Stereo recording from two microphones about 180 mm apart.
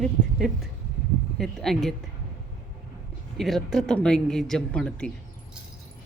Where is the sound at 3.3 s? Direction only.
Centre (ahead or behind).